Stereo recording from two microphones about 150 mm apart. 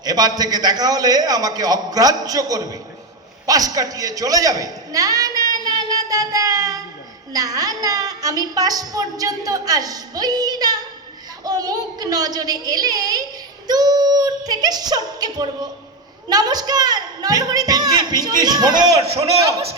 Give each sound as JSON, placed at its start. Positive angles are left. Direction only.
{"t": 0.0, "sound": "a woman's voice", "side_deg": -25}
{"t": 5.6, "sound": "child singing", "side_deg": -25}
{"t": 7.3, "sound": "a woman's voice", "side_deg": -25}
{"t": 19.1, "sound": "a man's voice", "side_deg": -45}